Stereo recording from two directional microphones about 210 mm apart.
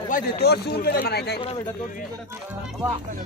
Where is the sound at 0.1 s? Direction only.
40° left (ahead or behind).